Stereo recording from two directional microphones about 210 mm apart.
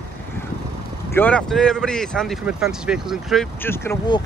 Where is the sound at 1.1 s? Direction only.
5° left (ahead or behind).